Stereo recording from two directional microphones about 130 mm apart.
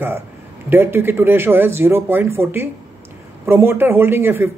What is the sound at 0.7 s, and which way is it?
Speech, 15° right (ahead or behind).